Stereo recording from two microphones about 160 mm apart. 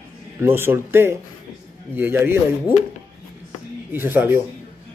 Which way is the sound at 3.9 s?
15° right (ahead or behind).